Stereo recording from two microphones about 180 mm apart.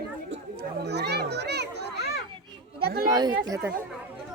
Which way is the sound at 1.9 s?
65° left (ahead or behind).